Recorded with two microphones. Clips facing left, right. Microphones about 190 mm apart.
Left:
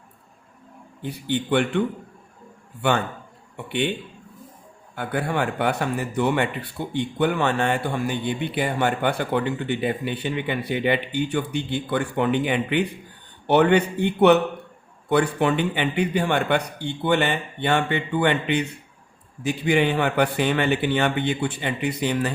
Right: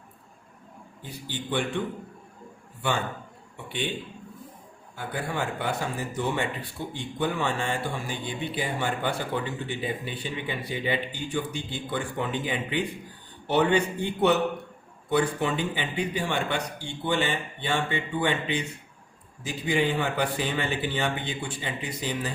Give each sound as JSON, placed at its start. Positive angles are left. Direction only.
{"t": 1.0, "sound": "speech", "side_deg": 65}
{"t": 4.9, "sound": "speech", "side_deg": 65}